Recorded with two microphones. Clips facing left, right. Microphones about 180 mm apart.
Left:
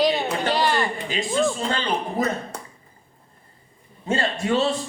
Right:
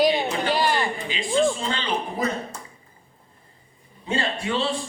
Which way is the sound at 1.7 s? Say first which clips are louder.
Left 2 dB; 45° left (ahead or behind).